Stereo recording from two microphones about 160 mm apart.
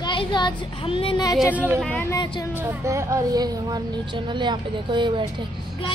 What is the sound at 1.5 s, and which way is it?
Speech, 10° right (ahead or behind).